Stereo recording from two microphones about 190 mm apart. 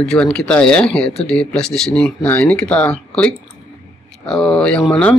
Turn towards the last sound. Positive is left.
turn(degrees=5)  # may be behind; listen again after turning